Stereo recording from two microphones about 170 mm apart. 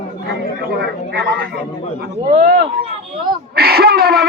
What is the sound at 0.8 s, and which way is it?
Speech, 70° right (ahead or behind).